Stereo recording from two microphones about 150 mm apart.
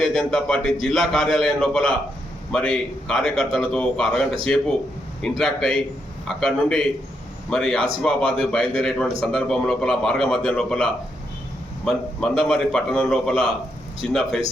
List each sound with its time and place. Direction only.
0.0 s a man's voice: centre (ahead or behind)